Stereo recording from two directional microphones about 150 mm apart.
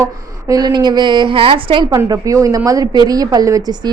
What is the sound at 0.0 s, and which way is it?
A woman's voice, 20° right (ahead or behind).